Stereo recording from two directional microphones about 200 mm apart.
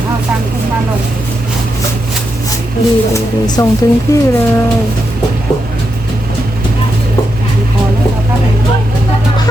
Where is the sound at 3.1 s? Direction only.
20° left (ahead or behind).